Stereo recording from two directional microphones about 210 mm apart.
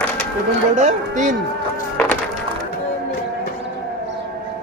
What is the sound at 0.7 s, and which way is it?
Speech, 35° right (ahead or behind).